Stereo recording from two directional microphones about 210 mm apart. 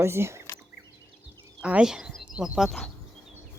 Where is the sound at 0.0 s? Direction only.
10° right (ahead or behind).